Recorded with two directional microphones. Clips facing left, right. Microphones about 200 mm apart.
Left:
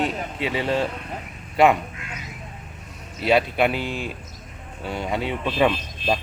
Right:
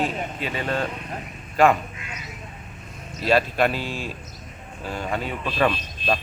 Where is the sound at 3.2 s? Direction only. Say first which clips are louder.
Left 1 dB; 15° left (ahead or behind).